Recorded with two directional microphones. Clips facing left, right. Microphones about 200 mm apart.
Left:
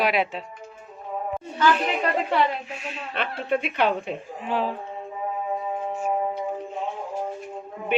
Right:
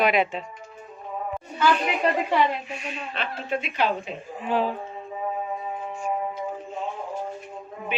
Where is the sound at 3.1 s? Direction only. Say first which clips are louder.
Left 4 dB; 60° left (ahead or behind).